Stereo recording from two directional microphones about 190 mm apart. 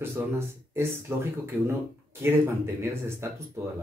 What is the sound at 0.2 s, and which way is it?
Speech, 10° right (ahead or behind).